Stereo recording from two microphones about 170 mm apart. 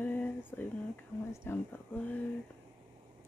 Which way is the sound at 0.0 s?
10° left (ahead or behind).